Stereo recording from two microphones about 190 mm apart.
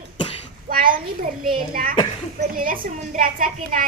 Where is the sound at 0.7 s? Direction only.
50° right (ahead or behind).